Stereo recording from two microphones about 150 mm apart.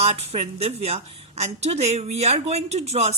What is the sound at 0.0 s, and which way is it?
A woman's voice, 45° right (ahead or behind).